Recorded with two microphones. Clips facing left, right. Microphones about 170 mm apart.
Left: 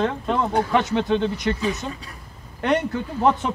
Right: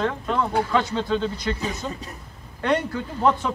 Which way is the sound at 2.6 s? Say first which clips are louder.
Left 2 dB; 20° left (ahead or behind).